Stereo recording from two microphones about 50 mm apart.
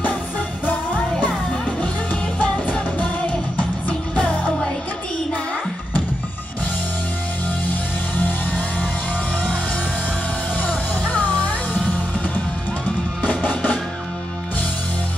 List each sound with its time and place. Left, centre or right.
2.3 s music: left
8.2 s vehicle: left
10.6 s music: left
13.2 s music: left